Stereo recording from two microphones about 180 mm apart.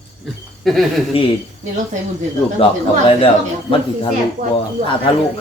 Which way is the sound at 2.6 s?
30° left (ahead or behind).